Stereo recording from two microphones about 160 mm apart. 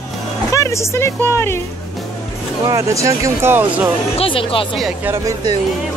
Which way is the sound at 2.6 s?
20° right (ahead or behind).